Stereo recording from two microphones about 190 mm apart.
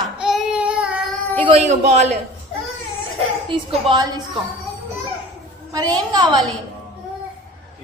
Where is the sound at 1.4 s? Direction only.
35° right (ahead or behind).